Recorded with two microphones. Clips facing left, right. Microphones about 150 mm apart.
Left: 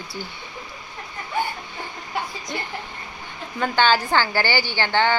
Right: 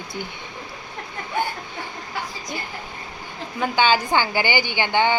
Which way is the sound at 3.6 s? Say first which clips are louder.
Even; 10° right (ahead or behind).